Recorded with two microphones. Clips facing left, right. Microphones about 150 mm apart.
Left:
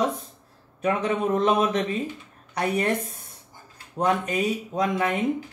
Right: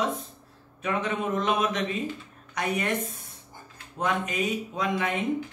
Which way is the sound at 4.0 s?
35° left (ahead or behind).